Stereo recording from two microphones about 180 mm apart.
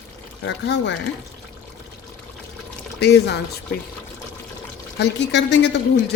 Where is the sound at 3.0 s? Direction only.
65° left (ahead or behind).